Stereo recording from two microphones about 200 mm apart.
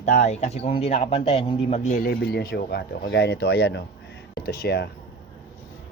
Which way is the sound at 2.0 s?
50° left (ahead or behind).